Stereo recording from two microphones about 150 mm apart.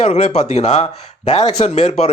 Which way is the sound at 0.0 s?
45° left (ahead or behind).